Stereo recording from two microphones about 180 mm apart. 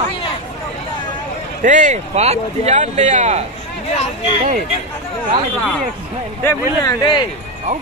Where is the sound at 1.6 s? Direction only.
45° right (ahead or behind).